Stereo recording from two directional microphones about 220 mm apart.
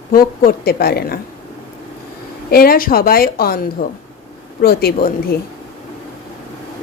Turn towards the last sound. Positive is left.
turn(degrees=45)  # may be behind; listen again after turning